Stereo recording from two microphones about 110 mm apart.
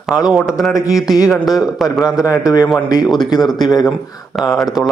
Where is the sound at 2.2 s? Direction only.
30° left (ahead or behind).